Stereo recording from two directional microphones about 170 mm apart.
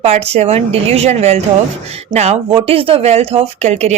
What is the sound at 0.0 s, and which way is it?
A woman's voice, 40° right (ahead or behind).